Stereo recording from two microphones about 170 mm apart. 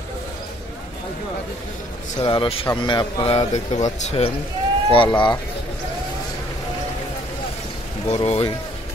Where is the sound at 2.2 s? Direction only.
30° left (ahead or behind).